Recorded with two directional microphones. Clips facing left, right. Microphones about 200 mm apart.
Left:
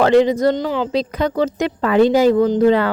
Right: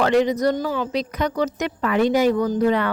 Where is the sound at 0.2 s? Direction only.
25° left (ahead or behind).